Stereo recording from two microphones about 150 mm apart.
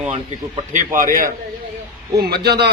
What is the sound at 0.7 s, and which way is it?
Speech, 60° right (ahead or behind).